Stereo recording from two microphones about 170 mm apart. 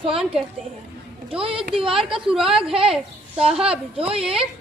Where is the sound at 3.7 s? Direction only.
35° right (ahead or behind).